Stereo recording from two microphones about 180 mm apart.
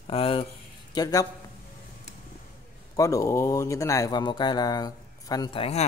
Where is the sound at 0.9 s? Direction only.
20° left (ahead or behind).